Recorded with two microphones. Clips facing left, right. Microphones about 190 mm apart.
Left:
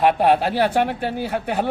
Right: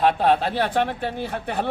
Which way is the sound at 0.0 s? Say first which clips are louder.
Left 2 dB; 10° left (ahead or behind).